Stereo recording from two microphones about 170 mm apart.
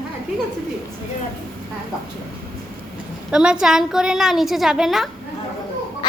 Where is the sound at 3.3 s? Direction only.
5° right (ahead or behind).